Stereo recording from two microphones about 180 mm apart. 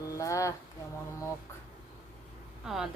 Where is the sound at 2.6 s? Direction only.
Centre (ahead or behind).